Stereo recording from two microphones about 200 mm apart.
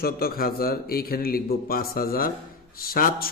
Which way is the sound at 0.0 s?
50° left (ahead or behind).